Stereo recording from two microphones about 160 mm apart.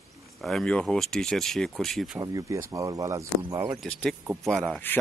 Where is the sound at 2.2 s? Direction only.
20° right (ahead or behind).